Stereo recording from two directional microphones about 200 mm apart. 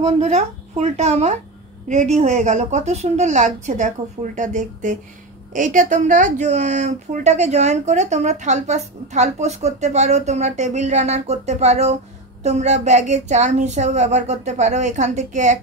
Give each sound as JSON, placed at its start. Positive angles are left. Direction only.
{"t": 0.0, "sound": "a woman's voice", "side_deg": -35}